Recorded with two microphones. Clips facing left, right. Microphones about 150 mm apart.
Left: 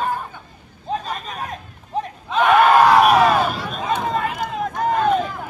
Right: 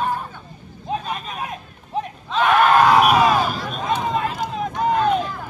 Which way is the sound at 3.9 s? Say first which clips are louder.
Even; 5° right (ahead or behind).